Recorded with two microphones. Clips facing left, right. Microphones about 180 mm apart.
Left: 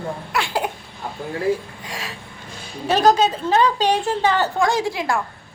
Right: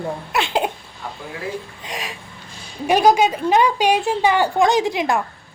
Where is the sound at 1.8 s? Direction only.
20° right (ahead or behind).